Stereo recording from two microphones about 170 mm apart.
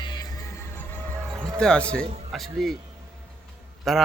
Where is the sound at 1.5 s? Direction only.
5° left (ahead or behind).